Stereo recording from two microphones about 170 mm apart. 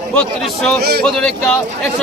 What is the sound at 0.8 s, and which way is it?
Speech, 70° right (ahead or behind).